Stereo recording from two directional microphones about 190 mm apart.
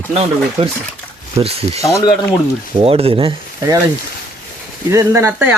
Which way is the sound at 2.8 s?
30° right (ahead or behind).